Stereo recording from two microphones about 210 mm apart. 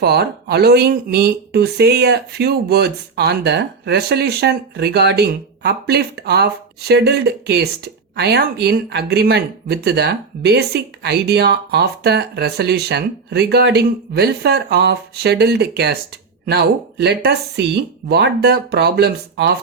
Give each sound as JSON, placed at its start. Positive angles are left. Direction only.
{"t": 0.0, "sound": "speech", "side_deg": -50}